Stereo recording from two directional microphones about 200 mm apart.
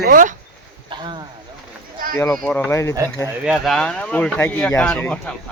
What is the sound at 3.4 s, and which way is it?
Speech, centre (ahead or behind).